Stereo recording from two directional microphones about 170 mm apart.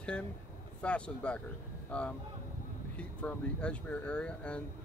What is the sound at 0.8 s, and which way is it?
Speech, 5° left (ahead or behind).